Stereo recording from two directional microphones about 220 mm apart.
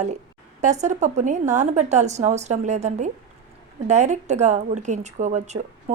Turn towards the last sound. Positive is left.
turn(degrees=-35)  # may be behind; listen again after turning